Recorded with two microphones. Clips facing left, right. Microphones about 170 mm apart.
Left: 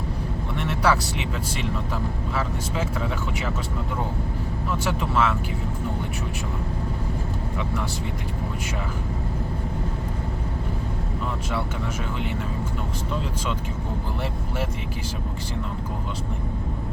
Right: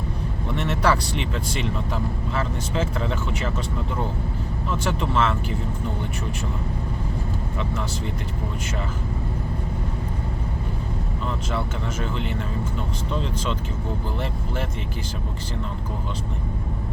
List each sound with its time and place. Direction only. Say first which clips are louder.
0.7 s speech: even; 10° left (ahead or behind)
4.9 s speech: even; 10° left (ahead or behind)